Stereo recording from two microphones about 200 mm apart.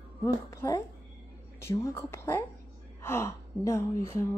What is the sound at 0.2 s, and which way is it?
A woman's voice, 15° left (ahead or behind).